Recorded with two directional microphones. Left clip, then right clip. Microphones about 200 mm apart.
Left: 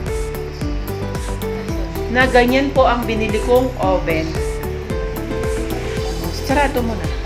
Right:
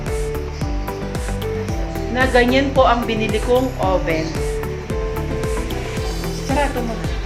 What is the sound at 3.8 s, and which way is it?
Music, 5° left (ahead or behind).